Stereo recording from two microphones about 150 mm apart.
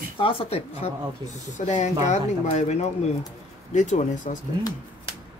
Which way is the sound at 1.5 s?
50° left (ahead or behind).